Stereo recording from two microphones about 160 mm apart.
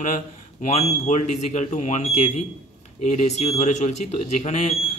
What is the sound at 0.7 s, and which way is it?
Speech, 45° left (ahead or behind).